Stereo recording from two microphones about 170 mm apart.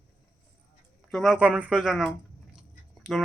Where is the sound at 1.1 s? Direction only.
Centre (ahead or behind).